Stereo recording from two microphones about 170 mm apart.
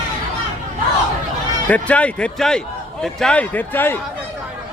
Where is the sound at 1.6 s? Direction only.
10° left (ahead or behind).